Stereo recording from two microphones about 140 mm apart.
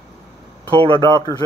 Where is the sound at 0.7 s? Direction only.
40° right (ahead or behind).